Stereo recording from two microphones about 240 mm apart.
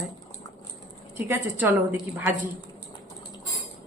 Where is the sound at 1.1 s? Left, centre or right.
Centre.